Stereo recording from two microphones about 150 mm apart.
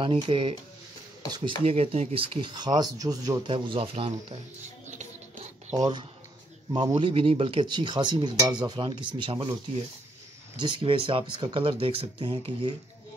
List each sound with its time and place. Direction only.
0.0 s speech: 35° right (ahead or behind)
3.5 s speech: 35° right (ahead or behind)
5.8 s speech: 30° right (ahead or behind)
10.6 s speech: 35° right (ahead or behind)